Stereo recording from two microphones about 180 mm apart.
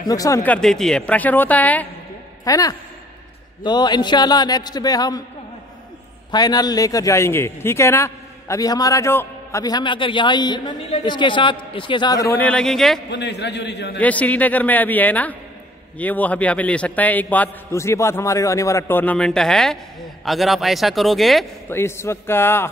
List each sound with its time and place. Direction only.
0.0 s a man's voice: 20° left (ahead or behind)
2.4 s a man's voice: 20° left (ahead or behind)
6.3 s a man's voice: 20° left (ahead or behind); by 13.0 s centre (ahead or behind)
13.1 s a man's voice: 70° left (ahead or behind)
13.9 s a man's voice: 10° left (ahead or behind)
21.6 s a man's voice: 15° left (ahead or behind)